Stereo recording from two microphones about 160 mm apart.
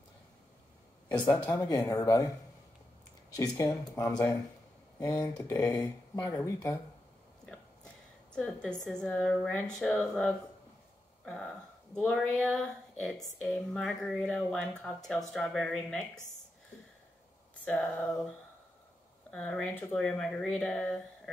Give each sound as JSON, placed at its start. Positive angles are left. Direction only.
{"t": 1.1, "sound": "speech", "side_deg": 10}
{"t": 1.4, "sound": "speech", "side_deg": 25}
{"t": 3.3, "sound": "speech", "side_deg": 20}
{"t": 5.1, "sound": "speech", "side_deg": 10}
{"t": 5.5, "sound": "speech", "side_deg": 20}
{"t": 8.3, "sound": "a woman's voice", "side_deg": 5}
{"t": 17.6, "sound": "speech", "side_deg": 5}
{"t": 19.3, "sound": "speech", "side_deg": 5}